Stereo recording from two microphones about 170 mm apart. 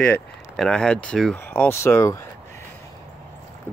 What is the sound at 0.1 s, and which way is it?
Speech, 5° left (ahead or behind).